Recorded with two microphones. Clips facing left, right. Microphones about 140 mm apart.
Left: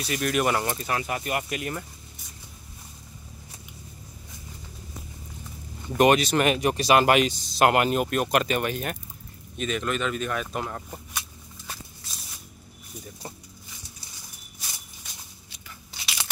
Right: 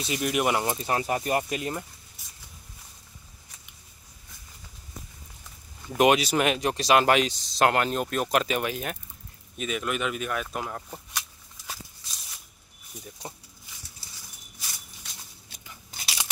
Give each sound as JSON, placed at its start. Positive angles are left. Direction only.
{"t": 0.0, "sound": "speech", "side_deg": -15}
{"t": 0.8, "sound": "speech", "side_deg": -30}
{"t": 5.9, "sound": "speech", "side_deg": -5}
{"t": 13.2, "sound": "speech", "side_deg": -15}
{"t": 15.5, "sound": "biting", "side_deg": -45}